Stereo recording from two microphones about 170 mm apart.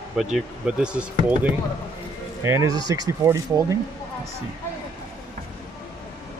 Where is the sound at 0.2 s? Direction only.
5° right (ahead or behind).